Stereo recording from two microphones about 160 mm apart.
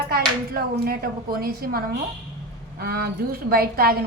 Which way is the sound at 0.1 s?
70° right (ahead or behind).